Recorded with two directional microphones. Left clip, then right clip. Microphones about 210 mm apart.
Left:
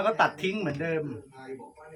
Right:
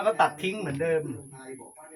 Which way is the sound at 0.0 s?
20° left (ahead or behind).